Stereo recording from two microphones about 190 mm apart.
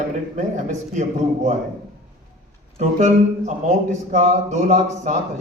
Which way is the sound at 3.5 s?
40° right (ahead or behind).